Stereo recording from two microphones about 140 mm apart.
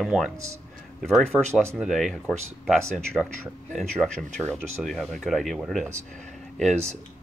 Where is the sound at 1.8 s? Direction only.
Centre (ahead or behind).